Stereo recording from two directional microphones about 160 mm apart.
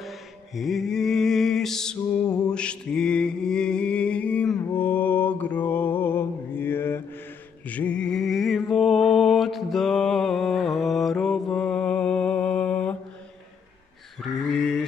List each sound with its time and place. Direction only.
0.6 s mantra: centre (ahead or behind)
2.2 s music: 25° left (ahead or behind)
2.5 s mantra: 5° left (ahead or behind)
14.2 s a sound: centre (ahead or behind)